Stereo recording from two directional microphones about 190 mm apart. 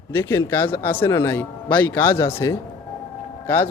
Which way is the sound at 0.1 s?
10° left (ahead or behind).